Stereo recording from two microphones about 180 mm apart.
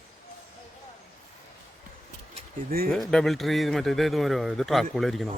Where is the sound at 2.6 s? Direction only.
55° right (ahead or behind).